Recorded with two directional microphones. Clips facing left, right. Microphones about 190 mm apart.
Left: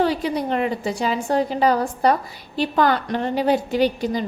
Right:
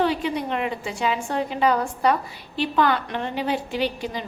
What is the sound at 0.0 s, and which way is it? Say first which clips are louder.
A woman's voice: left 2 dB; 40° left (ahead or behind).